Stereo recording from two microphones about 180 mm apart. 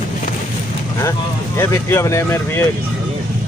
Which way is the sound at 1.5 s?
15° left (ahead or behind).